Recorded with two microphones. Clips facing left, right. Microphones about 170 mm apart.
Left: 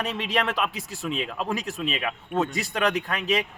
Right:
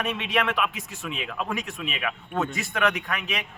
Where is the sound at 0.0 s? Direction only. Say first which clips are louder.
Even; 35° left (ahead or behind).